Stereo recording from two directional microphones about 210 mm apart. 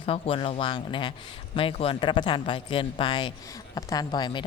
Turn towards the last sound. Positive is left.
turn(degrees=20)  # may be behind; listen again after turning